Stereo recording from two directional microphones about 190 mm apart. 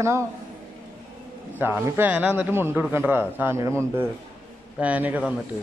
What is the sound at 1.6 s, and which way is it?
A man's voice, 10° right (ahead or behind).